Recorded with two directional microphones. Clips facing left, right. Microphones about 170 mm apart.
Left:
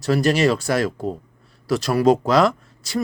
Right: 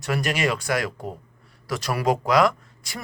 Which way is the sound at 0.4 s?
30° left (ahead or behind).